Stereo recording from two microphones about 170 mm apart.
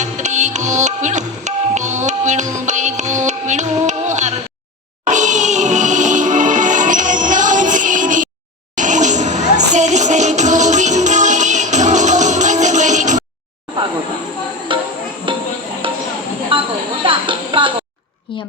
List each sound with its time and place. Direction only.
0.0 s music: 45° right (ahead or behind)
14.7 s music: 30° right (ahead or behind)
16.5 s a sound: 30° right (ahead or behind)